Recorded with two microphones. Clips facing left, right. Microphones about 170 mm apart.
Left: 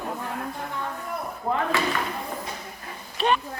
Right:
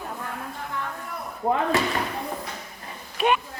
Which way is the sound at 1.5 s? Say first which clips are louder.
Right 3 dB; 25° right (ahead or behind).